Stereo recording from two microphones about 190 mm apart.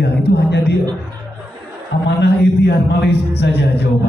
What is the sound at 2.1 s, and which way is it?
A man's voice, 60° left (ahead or behind).